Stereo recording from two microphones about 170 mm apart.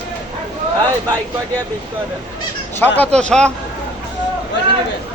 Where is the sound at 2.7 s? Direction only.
10° left (ahead or behind).